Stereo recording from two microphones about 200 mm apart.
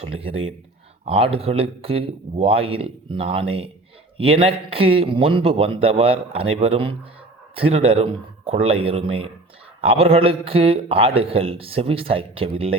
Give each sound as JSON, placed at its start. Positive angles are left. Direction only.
{"t": 0.0, "sound": "a man's voice", "side_deg": -30}